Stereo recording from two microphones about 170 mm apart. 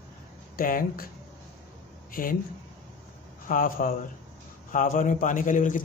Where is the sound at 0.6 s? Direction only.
55° left (ahead or behind).